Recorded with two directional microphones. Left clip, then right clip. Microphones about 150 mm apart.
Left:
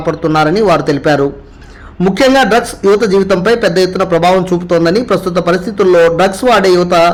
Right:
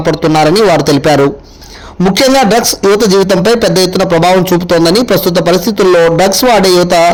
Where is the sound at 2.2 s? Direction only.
35° right (ahead or behind).